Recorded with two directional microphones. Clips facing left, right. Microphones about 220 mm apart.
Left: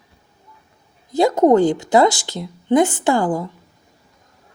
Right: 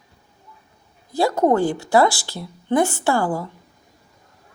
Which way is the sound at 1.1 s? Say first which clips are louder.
Left 5 dB; 20° left (ahead or behind).